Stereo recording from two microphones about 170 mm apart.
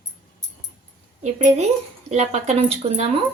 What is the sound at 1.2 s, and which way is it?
A woman's voice, 40° right (ahead or behind).